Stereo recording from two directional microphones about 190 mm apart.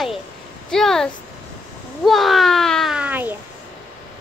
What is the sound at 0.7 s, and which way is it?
Speech, centre (ahead or behind).